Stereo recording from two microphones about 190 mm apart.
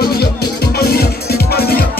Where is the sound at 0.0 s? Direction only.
55° left (ahead or behind).